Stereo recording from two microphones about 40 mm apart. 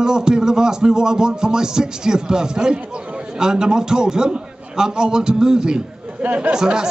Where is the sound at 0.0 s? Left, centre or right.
Centre.